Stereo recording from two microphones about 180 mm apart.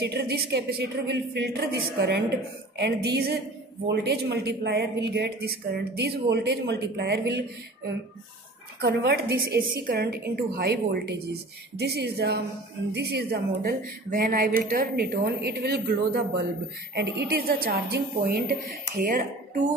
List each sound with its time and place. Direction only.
0.0 s a woman's voice: 65° right (ahead or behind)
8.8 s a woman's voice: 60° right (ahead or behind)